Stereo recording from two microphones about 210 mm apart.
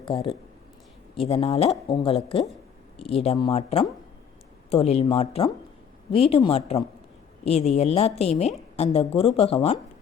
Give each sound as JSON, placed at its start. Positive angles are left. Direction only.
{"t": 0.0, "sound": "a woman's voice", "side_deg": 25}